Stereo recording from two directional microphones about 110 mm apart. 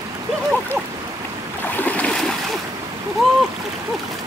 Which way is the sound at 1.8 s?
10° left (ahead or behind).